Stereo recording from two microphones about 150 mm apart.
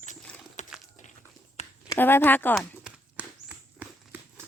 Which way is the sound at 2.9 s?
5° right (ahead or behind).